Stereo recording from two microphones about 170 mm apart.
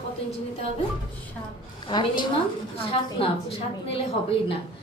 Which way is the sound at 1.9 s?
25° left (ahead or behind).